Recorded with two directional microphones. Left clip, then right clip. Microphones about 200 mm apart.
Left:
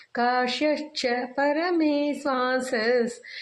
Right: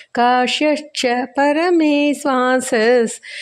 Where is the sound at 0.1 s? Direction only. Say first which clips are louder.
Right 9 dB; 60° right (ahead or behind).